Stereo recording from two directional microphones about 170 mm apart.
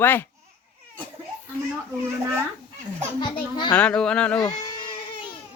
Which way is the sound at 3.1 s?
25° left (ahead or behind).